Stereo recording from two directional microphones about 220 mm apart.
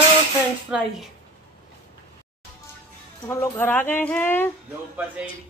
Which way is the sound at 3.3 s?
10° left (ahead or behind).